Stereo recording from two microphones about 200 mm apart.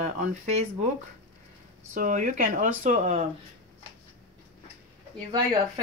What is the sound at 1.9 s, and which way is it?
Speech, 40° right (ahead or behind).